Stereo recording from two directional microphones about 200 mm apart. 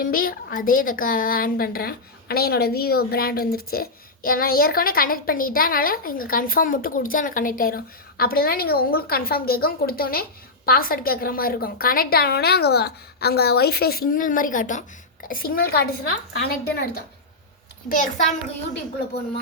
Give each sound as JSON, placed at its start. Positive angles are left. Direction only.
{"t": 0.0, "sound": "a woman's voice", "side_deg": 45}
{"t": 17.8, "sound": "a child's voice", "side_deg": 40}